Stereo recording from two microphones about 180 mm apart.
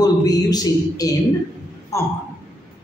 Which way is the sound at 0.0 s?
20° left (ahead or behind).